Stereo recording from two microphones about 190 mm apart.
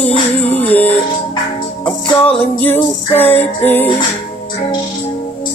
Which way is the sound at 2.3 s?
10° left (ahead or behind).